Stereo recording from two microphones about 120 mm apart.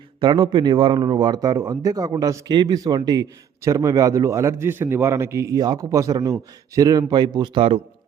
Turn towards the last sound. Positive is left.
turn(degrees=-45)  # may be behind; listen again after turning